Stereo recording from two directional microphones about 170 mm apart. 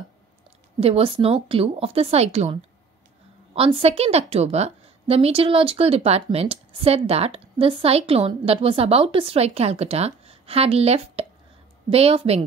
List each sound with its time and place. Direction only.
0.7 s a woman's voice: 35° right (ahead or behind)